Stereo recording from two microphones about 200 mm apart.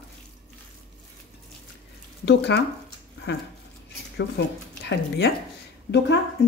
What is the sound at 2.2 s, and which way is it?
Speech, 60° left (ahead or behind).